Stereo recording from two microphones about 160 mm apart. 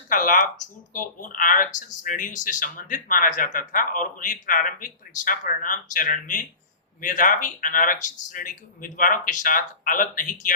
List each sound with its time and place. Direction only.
0.1 s speech: 55° left (ahead or behind)